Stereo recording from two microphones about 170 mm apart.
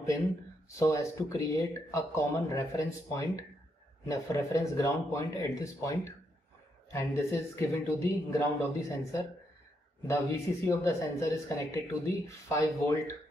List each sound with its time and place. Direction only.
0.7 s speech: 15° left (ahead or behind)